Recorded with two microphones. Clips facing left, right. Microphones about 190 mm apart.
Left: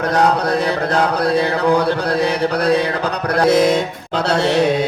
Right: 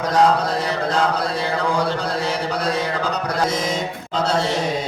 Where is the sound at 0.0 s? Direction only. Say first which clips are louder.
Left 1 dB; 65° left (ahead or behind).